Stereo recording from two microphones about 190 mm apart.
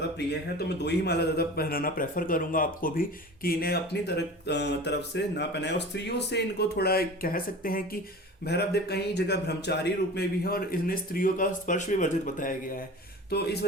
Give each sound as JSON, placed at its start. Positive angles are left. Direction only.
{"t": 0.3, "sound": "a man's voice", "side_deg": 60}
{"t": 8.4, "sound": "a man's voice", "side_deg": 60}
{"t": 13.3, "sound": "a man's voice", "side_deg": 60}